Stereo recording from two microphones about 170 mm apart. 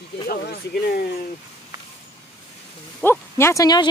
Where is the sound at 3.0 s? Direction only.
15° left (ahead or behind).